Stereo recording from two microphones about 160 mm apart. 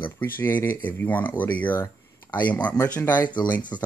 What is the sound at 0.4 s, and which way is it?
Speech, 15° left (ahead or behind).